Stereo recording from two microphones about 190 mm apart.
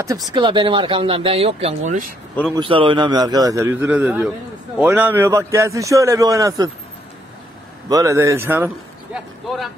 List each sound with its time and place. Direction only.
0.0 s speech: 20° right (ahead or behind); by 2.0 s 40° right (ahead or behind)
2.5 s a man's voice: 25° right (ahead or behind)
7.9 s speech: 15° right (ahead or behind)